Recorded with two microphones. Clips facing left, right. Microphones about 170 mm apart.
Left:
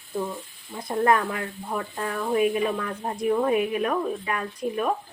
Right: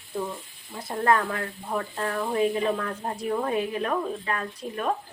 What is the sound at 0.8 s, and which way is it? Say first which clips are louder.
Speech: left 2 dB; 20° left (ahead or behind).